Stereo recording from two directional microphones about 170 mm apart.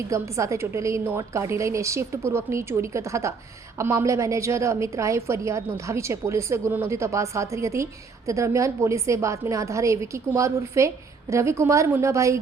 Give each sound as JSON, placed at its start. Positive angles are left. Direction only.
{"t": 0.1, "sound": "a woman's voice", "side_deg": -15}